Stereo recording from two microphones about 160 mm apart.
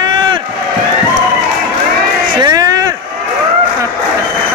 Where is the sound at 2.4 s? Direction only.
25° right (ahead or behind).